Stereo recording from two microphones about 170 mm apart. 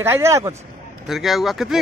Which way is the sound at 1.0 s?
Centre (ahead or behind).